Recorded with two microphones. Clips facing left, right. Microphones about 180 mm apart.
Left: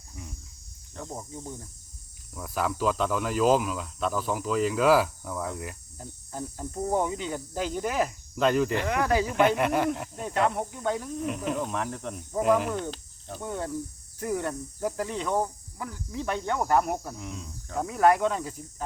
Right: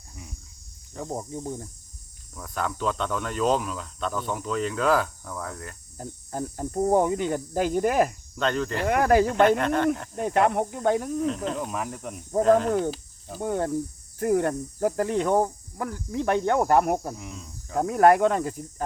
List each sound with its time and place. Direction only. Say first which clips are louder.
2.3 s speech: left 1 dB; 5° left (ahead or behind)
6.0 s speech: right 5 dB; 50° right (ahead or behind)
8.4 s speech: left 3 dB; 10° left (ahead or behind)
8.9 s speech: right 5 dB; 50° right (ahead or behind)
9.6 s speech: right 2 dB; 10° left (ahead or behind)
10.2 s speech: right 5 dB; 55° right (ahead or behind)
11.5 s speech: even; 5° right (ahead or behind)
12.4 s speech: right 4 dB; 10° left (ahead or behind)
12.9 s cricket: right 4 dB; 5° right (ahead or behind)
13.4 s speech: right 6 dB; 60° right (ahead or behind)
17.2 s speech: left 1 dB; centre (ahead or behind)
17.7 s speech: right 4 dB; 55° right (ahead or behind)